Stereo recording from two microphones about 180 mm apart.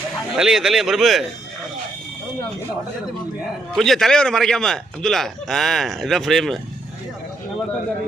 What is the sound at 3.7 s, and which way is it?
Speech, centre (ahead or behind).